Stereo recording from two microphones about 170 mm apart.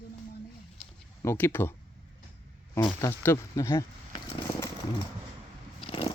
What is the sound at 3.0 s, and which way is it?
Speech, 15° left (ahead or behind).